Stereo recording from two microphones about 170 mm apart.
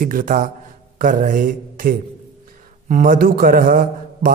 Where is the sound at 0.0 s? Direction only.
55° right (ahead or behind).